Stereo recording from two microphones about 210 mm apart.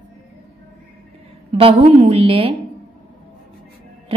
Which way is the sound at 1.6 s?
25° right (ahead or behind).